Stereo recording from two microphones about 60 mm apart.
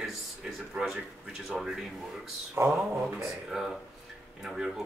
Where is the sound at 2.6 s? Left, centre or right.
Right.